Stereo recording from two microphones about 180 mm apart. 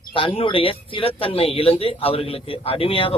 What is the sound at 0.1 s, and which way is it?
Speech, 30° left (ahead or behind).